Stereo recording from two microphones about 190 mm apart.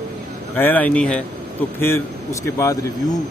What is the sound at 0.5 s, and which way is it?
Speech, 10° left (ahead or behind).